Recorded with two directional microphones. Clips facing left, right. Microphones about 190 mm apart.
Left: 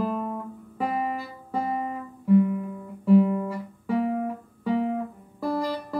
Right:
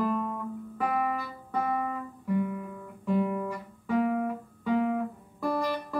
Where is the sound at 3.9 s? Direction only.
30° left (ahead or behind).